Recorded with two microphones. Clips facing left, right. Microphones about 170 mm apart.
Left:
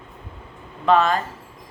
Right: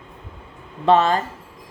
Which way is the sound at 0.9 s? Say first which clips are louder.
Right 1 dB; 30° right (ahead or behind).